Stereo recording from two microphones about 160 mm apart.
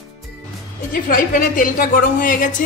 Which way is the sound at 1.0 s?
60° left (ahead or behind).